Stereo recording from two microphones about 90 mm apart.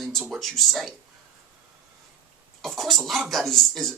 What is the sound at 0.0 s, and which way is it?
Speech, centre (ahead or behind).